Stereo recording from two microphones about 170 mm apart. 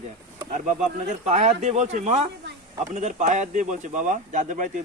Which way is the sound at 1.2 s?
40° right (ahead or behind).